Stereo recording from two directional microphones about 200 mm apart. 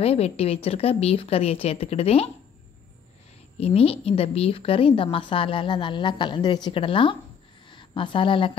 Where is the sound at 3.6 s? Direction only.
30° left (ahead or behind).